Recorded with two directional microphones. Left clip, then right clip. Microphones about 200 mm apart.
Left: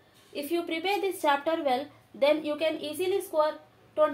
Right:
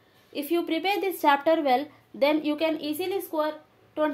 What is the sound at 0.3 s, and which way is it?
A woman's voice, 60° right (ahead or behind).